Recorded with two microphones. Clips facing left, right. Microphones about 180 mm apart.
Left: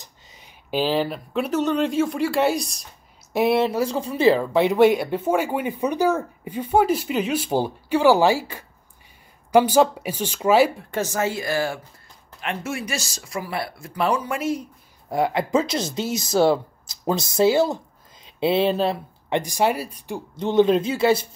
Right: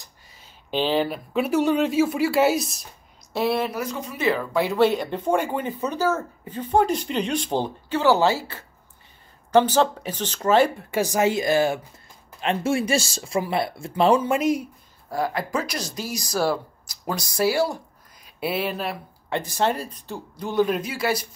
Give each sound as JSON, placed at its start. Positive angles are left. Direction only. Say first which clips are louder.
{"t": 0.0, "sound": "a sound", "louder": "left 3 dB", "side_deg": 20}
{"t": 0.7, "sound": "speech", "louder": "even", "side_deg": 5}
{"t": 3.3, "sound": "speech", "louder": "left 4 dB", "side_deg": 20}
{"t": 4.6, "sound": "speech", "louder": "left 4 dB", "side_deg": 15}
{"t": 10.9, "sound": "speech", "louder": "right 3 dB", "side_deg": -15}
{"t": 15.0, "sound": "speech", "louder": "left 4 dB", "side_deg": 25}
{"t": 20.3, "sound": "speech", "louder": "left 5 dB", "side_deg": 25}